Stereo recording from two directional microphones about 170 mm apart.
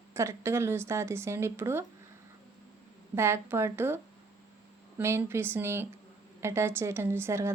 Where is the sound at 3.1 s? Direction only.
15° right (ahead or behind).